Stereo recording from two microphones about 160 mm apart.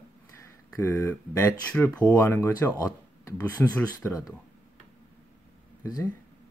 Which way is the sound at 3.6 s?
10° left (ahead or behind).